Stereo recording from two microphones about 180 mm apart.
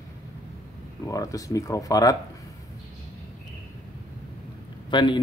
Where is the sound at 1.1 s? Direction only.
20° left (ahead or behind).